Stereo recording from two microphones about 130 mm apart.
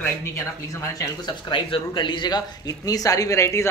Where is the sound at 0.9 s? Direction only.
30° left (ahead or behind).